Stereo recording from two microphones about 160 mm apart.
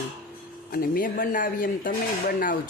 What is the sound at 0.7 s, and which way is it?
Speech, 65° left (ahead or behind).